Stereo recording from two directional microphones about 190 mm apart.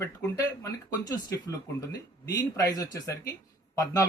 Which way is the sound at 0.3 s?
20° left (ahead or behind).